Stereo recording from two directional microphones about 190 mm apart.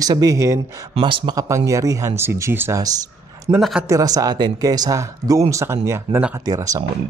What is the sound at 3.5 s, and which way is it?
Speech, 25° right (ahead or behind).